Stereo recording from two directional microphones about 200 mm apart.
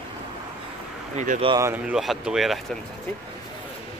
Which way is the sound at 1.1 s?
40° right (ahead or behind).